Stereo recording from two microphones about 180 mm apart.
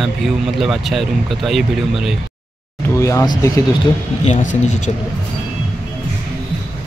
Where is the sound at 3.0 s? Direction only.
15° left (ahead or behind).